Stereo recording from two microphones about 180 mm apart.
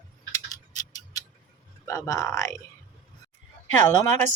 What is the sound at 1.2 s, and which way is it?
Tick-tock, 20° left (ahead or behind).